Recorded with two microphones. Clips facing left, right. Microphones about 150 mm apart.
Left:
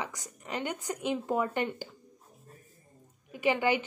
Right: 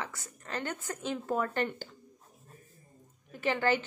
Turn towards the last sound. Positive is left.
turn(degrees=15)  # may be behind; listen again after turning